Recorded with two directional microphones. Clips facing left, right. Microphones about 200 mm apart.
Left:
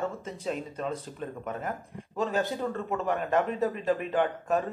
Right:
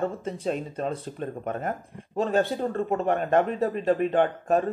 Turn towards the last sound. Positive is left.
turn(degrees=-30)  # may be behind; listen again after turning